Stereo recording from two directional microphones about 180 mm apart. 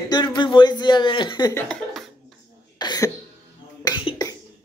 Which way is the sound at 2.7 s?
20° left (ahead or behind).